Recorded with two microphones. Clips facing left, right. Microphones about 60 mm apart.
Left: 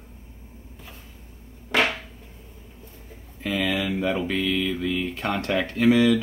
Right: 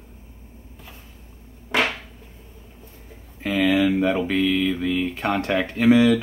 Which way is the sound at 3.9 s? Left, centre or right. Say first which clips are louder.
Right 4 dB; centre.